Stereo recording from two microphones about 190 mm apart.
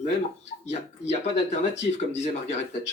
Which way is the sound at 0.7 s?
35° left (ahead or behind).